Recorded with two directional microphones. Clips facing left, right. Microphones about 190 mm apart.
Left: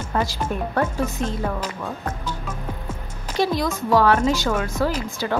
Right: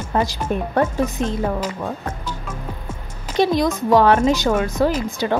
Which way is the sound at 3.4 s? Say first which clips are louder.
Right 4 dB; 20° right (ahead or behind).